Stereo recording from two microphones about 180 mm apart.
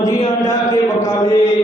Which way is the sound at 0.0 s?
20° left (ahead or behind).